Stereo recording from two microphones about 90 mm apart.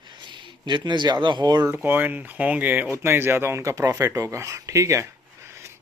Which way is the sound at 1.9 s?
20° right (ahead or behind).